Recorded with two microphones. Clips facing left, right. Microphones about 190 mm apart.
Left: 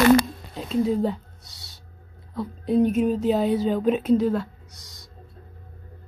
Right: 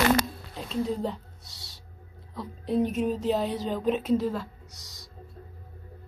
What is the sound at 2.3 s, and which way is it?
Speech, centre (ahead or behind).